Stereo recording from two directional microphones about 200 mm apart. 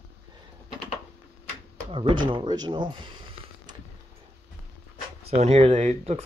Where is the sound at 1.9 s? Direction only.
25° right (ahead or behind).